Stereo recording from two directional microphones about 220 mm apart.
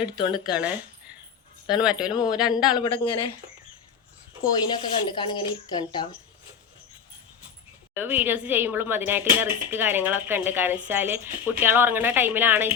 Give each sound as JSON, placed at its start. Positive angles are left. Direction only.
{"t": 0.2, "sound": "speech", "side_deg": 20}
{"t": 0.5, "sound": "speech", "side_deg": -5}
{"t": 2.7, "sound": "speech", "side_deg": 20}
{"t": 4.4, "sound": "speech", "side_deg": 20}
{"t": 7.9, "sound": "speech", "side_deg": -10}